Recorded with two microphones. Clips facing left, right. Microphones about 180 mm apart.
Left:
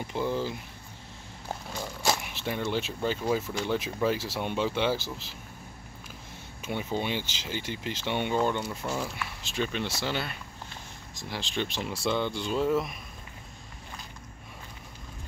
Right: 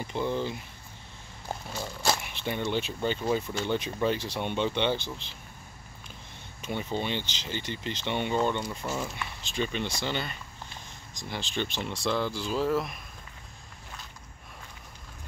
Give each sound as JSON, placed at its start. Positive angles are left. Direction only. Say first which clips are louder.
{"t": 0.0, "sound": "speech", "louder": "even", "side_deg": 5}
{"t": 2.1, "sound": "speech", "louder": "even", "side_deg": 0}
{"t": 6.6, "sound": "speech", "louder": "left 1 dB", "side_deg": 5}